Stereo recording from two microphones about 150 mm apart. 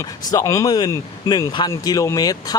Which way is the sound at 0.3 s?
20° left (ahead or behind).